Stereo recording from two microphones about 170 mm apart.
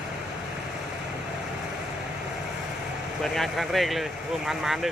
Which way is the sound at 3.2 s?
Centre (ahead or behind).